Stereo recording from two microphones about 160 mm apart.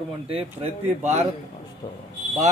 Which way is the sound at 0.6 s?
45° right (ahead or behind).